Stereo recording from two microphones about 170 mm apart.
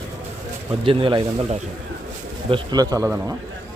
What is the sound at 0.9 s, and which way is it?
A man's voice, 30° right (ahead or behind).